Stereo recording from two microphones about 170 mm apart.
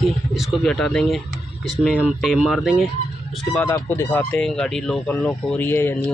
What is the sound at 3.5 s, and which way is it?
Speech, 10° left (ahead or behind).